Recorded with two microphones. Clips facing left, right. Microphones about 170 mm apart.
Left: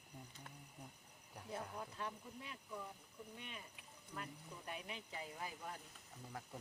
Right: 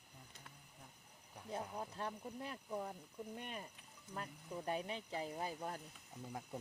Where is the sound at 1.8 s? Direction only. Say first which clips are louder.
Right 3 dB; 40° right (ahead or behind).